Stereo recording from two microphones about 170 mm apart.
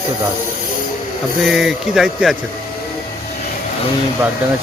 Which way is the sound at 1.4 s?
Centre (ahead or behind).